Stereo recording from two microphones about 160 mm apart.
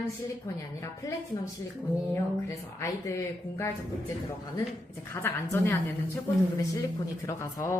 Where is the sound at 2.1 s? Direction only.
20° left (ahead or behind).